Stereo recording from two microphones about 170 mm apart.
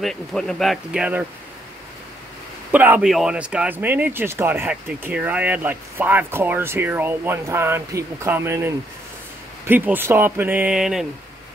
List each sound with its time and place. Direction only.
0.0 s speech: 5° left (ahead or behind)
2.7 s speech: 10° right (ahead or behind)